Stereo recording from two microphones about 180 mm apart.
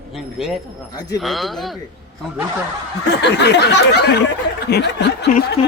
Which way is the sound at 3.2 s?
70° left (ahead or behind).